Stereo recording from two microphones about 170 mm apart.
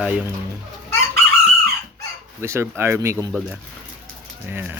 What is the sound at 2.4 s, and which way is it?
Speech, 15° right (ahead or behind).